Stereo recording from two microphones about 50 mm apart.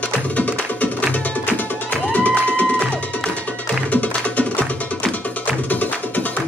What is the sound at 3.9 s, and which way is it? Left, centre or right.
Music, left.